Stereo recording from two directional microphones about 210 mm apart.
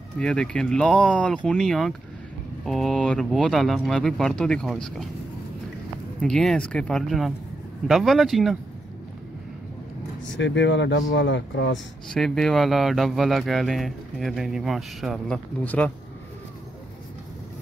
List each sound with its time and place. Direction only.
0.2 s speech: 5° left (ahead or behind)
6.2 s speech: 5° left (ahead or behind)
10.2 s speech: 60° left (ahead or behind)
12.1 s speech: centre (ahead or behind)